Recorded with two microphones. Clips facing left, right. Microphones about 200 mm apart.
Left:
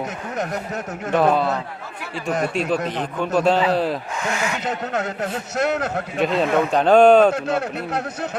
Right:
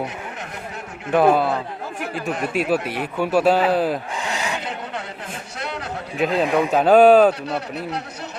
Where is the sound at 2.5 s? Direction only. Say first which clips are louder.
Right 1 dB; 5° right (ahead or behind).